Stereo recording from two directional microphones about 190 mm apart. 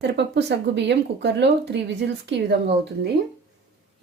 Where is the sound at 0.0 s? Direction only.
65° right (ahead or behind).